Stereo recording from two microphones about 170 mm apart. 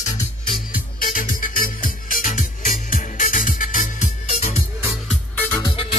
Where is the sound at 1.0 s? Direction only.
55° left (ahead or behind).